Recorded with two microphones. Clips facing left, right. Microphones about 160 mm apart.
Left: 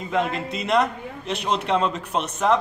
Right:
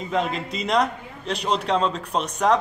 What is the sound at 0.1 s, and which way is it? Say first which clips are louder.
A man's voice: left 1 dB; 5° left (ahead or behind).